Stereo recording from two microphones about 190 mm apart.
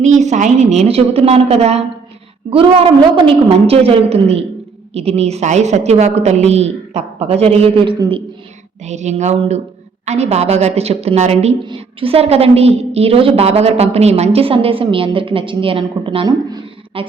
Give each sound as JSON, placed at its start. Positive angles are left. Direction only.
{"t": 0.0, "sound": "a woman's voice", "side_deg": -40}